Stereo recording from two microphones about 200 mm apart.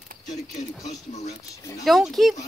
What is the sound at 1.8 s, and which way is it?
Speech, centre (ahead or behind).